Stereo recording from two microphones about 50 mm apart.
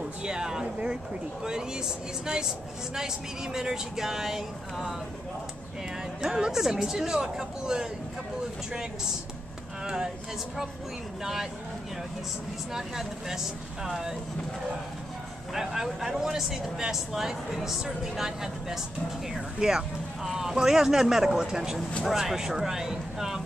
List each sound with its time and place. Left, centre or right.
0.2 s speech: centre
2.2 s speech: centre
3.5 s speech: centre
6.2 s speech: centre
9.8 s speech: centre
12.7 s speech: centre
15.5 s speech: centre